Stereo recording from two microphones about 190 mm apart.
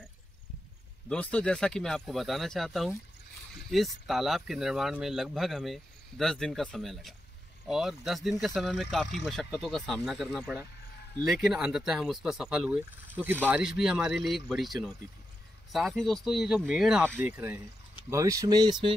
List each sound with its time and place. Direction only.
1.0 s speech: 5° left (ahead or behind); by 18.9 s 25° right (ahead or behind)